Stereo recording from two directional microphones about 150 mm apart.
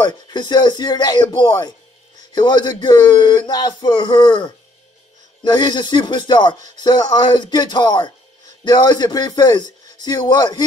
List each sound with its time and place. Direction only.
0.0 s speech: 30° left (ahead or behind)